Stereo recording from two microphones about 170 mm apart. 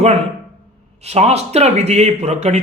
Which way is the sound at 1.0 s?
40° right (ahead or behind).